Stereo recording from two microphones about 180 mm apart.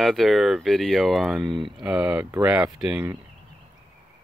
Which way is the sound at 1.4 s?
25° right (ahead or behind).